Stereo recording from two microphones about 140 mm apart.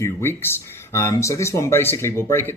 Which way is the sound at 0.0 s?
15° left (ahead or behind).